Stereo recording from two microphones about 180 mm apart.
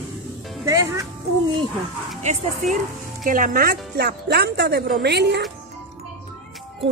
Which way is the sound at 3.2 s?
50° right (ahead or behind).